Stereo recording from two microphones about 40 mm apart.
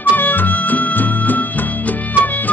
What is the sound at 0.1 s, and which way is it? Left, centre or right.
Music, left.